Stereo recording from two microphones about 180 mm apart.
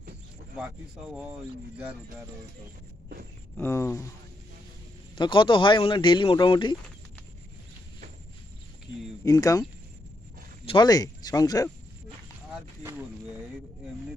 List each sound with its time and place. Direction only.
3.5 s speech: 15° left (ahead or behind)
5.1 s speech: 25° left (ahead or behind)
9.2 s speech: 20° left (ahead or behind)